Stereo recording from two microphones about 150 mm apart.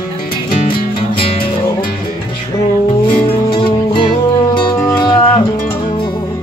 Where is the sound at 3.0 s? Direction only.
35° left (ahead or behind).